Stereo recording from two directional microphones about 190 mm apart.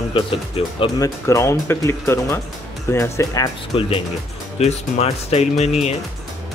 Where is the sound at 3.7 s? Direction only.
30° left (ahead or behind).